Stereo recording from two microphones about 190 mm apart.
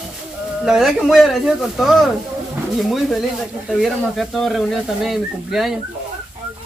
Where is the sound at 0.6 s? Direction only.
5° right (ahead or behind).